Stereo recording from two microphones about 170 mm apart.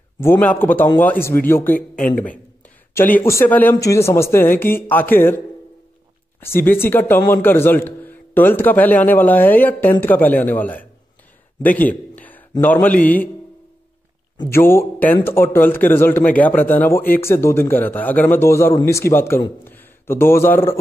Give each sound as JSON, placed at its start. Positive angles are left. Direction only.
{"t": 0.2, "sound": "a man's voice", "side_deg": 10}
{"t": 1.8, "sound": "speech", "side_deg": 55}
{"t": 2.9, "sound": "a man's voice", "side_deg": 10}
{"t": 6.4, "sound": "a man's voice", "side_deg": 15}
{"t": 11.6, "sound": "a sound", "side_deg": 10}
{"t": 13.0, "sound": "a man's voice", "side_deg": 10}
{"t": 14.5, "sound": "a man's voice", "side_deg": 15}